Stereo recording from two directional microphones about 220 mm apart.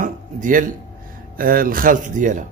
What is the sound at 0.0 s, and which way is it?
Music, 35° right (ahead or behind).